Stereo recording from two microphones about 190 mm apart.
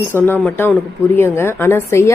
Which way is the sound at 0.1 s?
10° left (ahead or behind).